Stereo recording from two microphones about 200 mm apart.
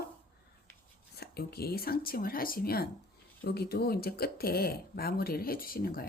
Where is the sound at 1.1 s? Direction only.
50° left (ahead or behind).